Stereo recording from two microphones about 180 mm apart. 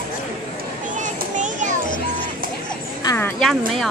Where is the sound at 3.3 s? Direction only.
Centre (ahead or behind).